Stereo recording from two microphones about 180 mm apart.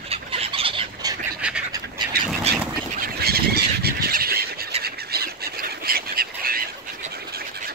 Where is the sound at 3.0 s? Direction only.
60° right (ahead or behind).